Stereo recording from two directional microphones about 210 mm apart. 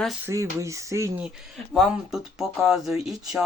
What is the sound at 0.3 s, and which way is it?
Speech, 15° right (ahead or behind).